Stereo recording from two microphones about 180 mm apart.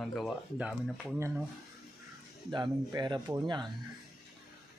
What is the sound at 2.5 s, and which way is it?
Speech, 25° right (ahead or behind).